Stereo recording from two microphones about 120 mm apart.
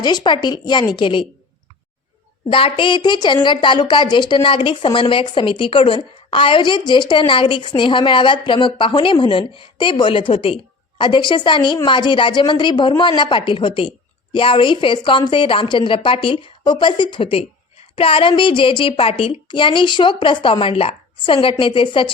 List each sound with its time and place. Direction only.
0.0 s a woman's voice: 35° left (ahead or behind)
2.5 s a woman's voice: 50° left (ahead or behind)